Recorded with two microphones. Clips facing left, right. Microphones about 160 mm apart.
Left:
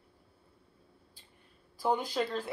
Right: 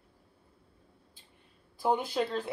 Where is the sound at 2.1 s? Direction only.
20° right (ahead or behind).